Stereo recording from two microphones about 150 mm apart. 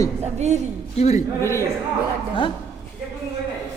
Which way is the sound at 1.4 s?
20° left (ahead or behind).